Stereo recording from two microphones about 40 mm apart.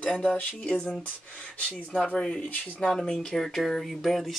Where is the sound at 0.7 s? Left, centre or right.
Left.